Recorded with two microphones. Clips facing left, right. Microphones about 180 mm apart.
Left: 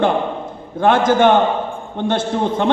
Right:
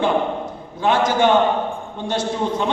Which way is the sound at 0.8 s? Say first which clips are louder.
Left 4 dB; 55° left (ahead or behind).